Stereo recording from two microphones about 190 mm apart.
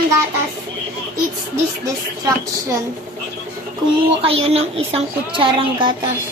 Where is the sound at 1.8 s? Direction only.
20° right (ahead or behind).